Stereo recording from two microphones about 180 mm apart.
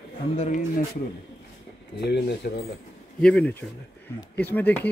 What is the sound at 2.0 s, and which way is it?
Speech, 65° left (ahead or behind).